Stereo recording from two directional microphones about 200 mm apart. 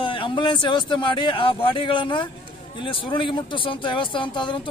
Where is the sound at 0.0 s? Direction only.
25° left (ahead or behind).